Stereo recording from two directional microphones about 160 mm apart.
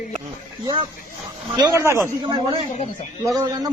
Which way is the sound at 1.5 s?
20° right (ahead or behind).